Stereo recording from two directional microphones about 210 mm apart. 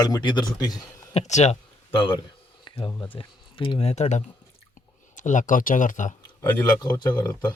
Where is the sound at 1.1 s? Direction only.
35° left (ahead or behind).